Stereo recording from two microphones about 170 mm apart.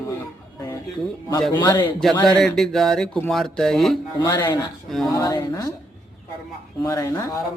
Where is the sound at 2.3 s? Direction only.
Centre (ahead or behind).